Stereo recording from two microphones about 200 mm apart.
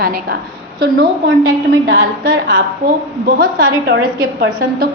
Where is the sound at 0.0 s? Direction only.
50° right (ahead or behind).